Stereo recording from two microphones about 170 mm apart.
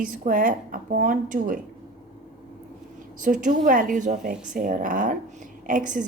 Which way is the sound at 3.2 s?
50° right (ahead or behind).